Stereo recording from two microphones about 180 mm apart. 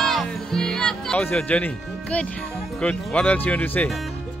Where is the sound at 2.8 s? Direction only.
5° left (ahead or behind).